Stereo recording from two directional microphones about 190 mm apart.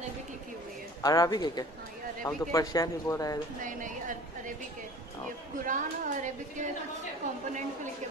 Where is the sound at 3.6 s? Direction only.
45° right (ahead or behind).